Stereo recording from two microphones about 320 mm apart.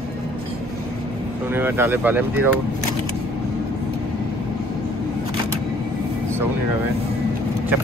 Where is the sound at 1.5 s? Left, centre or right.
Centre.